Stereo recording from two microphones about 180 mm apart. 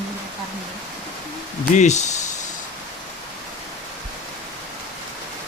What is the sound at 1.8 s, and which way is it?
Speech, 40° left (ahead or behind).